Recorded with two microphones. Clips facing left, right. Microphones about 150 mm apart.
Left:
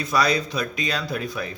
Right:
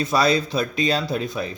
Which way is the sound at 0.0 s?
25° right (ahead or behind).